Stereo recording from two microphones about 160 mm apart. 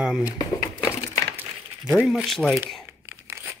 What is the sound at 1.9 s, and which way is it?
Speech, 5° right (ahead or behind).